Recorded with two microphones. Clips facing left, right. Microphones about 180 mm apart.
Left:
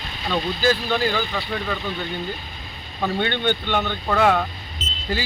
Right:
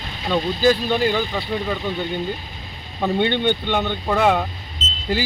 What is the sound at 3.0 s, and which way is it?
Speech, 15° right (ahead or behind).